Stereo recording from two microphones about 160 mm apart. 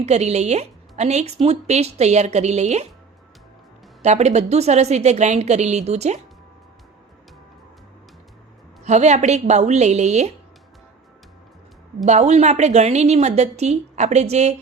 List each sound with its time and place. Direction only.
0.0 s a woman's voice: 45° right (ahead or behind)
4.0 s a woman's voice: 45° right (ahead or behind)
8.8 s a woman's voice: 45° right (ahead or behind)
12.0 s a woman's voice: 45° right (ahead or behind)